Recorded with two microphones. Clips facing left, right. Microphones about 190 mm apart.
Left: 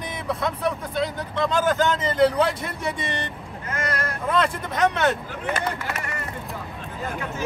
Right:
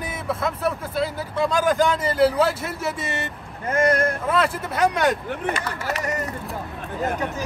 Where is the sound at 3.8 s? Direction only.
50° right (ahead or behind).